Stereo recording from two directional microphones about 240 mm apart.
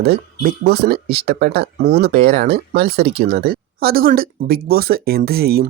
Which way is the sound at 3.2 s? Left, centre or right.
Right.